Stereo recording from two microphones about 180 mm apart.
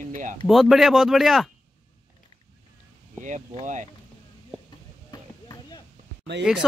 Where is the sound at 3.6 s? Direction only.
45° right (ahead or behind).